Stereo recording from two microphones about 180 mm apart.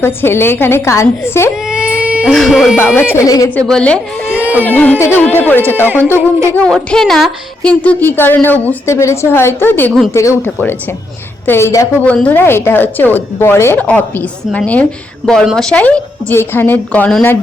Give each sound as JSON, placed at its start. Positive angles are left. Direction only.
{"t": 0.0, "sound": "a woman's voice", "side_deg": 10}
{"t": 1.6, "sound": "baby cry", "side_deg": -5}
{"t": 2.9, "sound": "a woman's voice", "side_deg": 10}
{"t": 3.5, "sound": "a woman's voice", "side_deg": 5}